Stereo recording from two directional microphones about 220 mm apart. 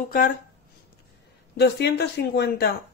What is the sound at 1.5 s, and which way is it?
Speech, 45° left (ahead or behind).